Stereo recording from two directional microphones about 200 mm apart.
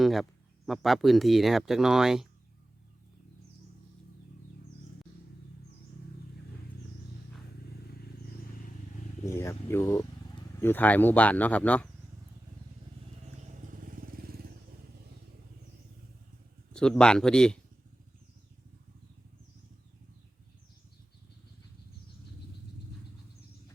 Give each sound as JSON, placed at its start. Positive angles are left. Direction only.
{"t": 0.0, "sound": "speech", "side_deg": 0}
{"t": 9.2, "sound": "speech", "side_deg": 15}
{"t": 13.6, "sound": "vehicle", "side_deg": -45}
{"t": 16.7, "sound": "speech", "side_deg": 5}